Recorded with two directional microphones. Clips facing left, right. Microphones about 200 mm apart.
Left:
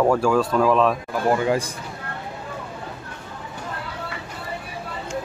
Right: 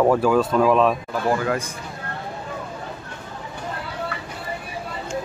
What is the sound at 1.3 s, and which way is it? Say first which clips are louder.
Speech: left 2 dB; 25° left (ahead or behind).